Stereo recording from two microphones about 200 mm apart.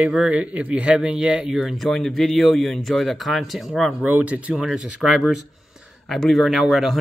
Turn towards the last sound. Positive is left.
turn(degrees=0)  # may be behind; listen again after turning